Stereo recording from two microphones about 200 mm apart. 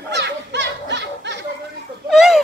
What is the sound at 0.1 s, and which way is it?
Snicker, 60° right (ahead or behind).